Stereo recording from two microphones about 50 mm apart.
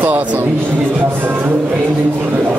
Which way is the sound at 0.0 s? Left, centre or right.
Right.